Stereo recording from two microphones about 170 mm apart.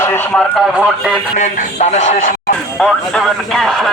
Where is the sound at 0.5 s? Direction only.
5° right (ahead or behind).